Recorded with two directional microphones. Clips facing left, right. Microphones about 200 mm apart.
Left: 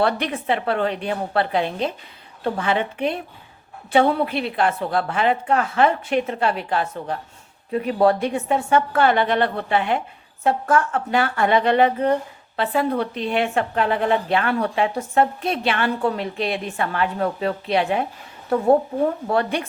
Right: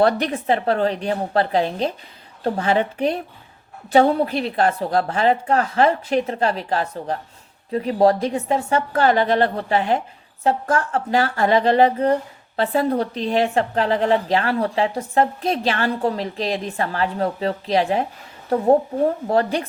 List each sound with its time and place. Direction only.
0.0 s speech: 40° right (ahead or behind)